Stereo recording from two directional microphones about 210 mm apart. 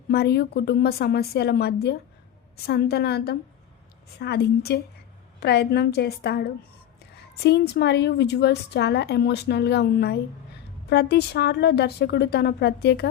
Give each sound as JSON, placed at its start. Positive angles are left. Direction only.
{"t": 0.1, "sound": "a woman's voice", "side_deg": 50}